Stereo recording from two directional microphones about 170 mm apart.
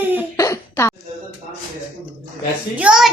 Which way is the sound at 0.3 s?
15° left (ahead or behind).